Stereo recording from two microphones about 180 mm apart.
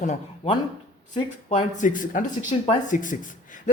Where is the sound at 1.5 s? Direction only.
40° left (ahead or behind).